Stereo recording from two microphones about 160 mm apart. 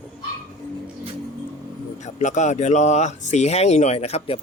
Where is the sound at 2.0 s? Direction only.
50° left (ahead or behind).